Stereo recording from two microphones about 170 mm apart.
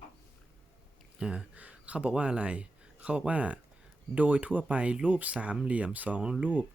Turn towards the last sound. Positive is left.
turn(degrees=-10)  # may be behind; listen again after turning